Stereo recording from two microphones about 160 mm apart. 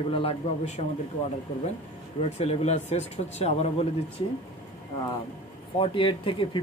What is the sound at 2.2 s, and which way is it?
Speech, 40° left (ahead or behind).